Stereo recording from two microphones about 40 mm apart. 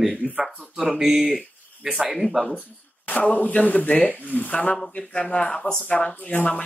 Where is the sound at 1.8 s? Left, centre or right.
Centre.